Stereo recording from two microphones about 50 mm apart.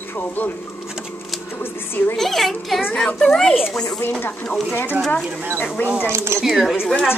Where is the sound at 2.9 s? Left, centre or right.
Centre.